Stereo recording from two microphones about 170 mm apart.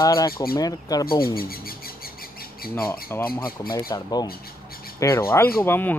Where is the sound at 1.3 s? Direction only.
60° left (ahead or behind).